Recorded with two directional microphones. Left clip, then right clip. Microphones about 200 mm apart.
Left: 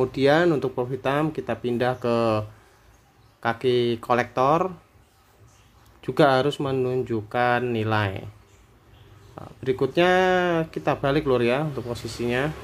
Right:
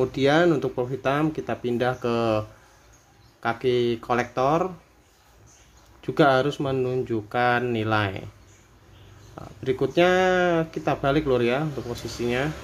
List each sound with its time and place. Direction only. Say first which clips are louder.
0.0 s speech: left 1 dB; 10° left (ahead or behind)
5.9 s speech: even; 10° left (ahead or behind)
9.3 s speech: left 1 dB; 5° left (ahead or behind)